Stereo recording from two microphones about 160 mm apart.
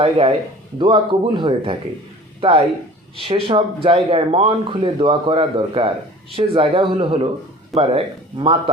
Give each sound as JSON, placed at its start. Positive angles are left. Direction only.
{"t": 0.0, "sound": "speech", "side_deg": -35}